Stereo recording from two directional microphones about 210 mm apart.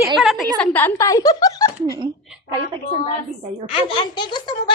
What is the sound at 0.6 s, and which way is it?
Speech, 10° left (ahead or behind).